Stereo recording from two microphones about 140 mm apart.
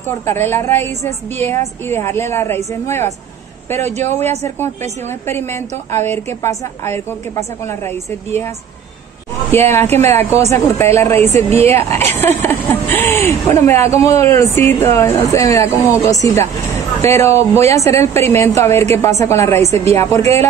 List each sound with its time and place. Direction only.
0.2 s a woman's voice: 15° left (ahead or behind)
5.2 s a woman's voice: 20° left (ahead or behind)
9.5 s a woman's voice: 15° left (ahead or behind)
19.6 s a woman's voice: 50° right (ahead or behind)
19.9 s speech: 20° left (ahead or behind)